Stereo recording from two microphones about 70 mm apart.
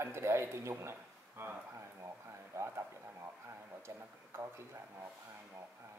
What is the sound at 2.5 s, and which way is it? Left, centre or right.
Speech, right.